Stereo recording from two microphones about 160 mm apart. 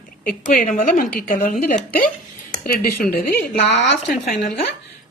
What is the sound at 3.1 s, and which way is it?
Speech, 80° left.